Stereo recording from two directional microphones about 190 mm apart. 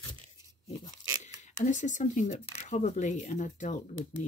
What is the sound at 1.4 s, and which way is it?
Speech, 40° left (ahead or behind).